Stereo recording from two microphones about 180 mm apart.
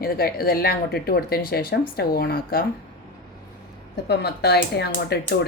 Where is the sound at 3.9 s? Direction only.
65° left (ahead or behind).